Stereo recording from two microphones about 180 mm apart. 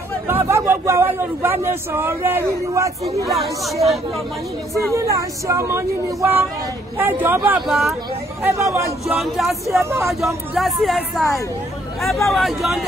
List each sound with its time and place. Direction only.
0.3 s speech: 15° right (ahead or behind)
3.3 s speech: centre (ahead or behind)
4.9 s speech: 15° right (ahead or behind); by 8.0 s centre (ahead or behind)
8.5 s speech: 15° right (ahead or behind)
9.0 s speech: centre (ahead or behind)
9.8 s speech: 15° right (ahead or behind)
10.2 s speech: centre (ahead or behind)